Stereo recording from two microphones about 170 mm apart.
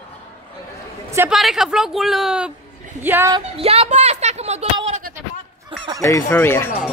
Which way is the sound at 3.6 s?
35° right (ahead or behind).